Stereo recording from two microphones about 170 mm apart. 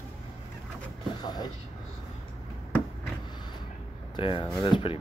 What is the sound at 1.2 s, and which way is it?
Speech, 25° left (ahead or behind).